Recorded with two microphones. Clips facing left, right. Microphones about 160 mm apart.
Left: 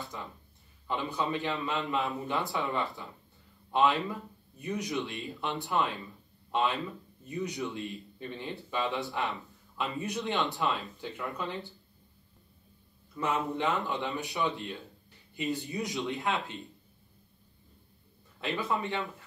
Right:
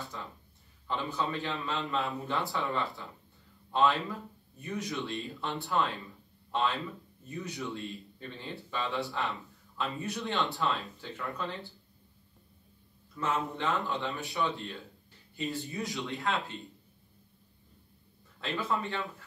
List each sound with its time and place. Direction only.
0.0 s a sound: 20° left (ahead or behind)
0.8 s a man's voice: 15° left (ahead or behind)
4.6 s a man's voice: 15° left (ahead or behind)
13.1 s speech: 15° left (ahead or behind)
18.4 s speech: 20° left (ahead or behind)